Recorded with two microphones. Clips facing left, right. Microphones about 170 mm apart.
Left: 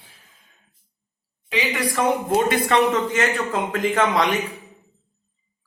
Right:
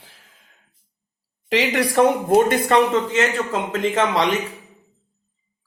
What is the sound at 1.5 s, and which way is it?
A woman's voice, 80° right.